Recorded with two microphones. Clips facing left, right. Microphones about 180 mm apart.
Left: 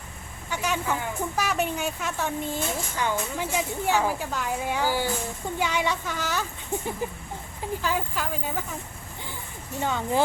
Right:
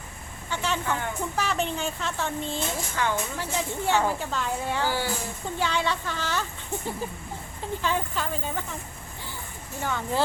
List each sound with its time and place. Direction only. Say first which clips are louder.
0.5 s speech: left 1 dB; 10° left (ahead or behind)
9.8 s speech: left 2 dB; 15° left (ahead or behind)